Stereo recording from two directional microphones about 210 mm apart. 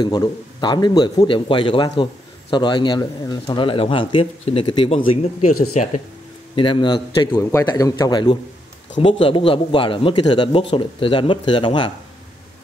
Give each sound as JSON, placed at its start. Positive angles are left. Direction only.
{"t": 0.0, "sound": "a man's voice", "side_deg": 20}
{"t": 6.5, "sound": "a man's voice", "side_deg": 25}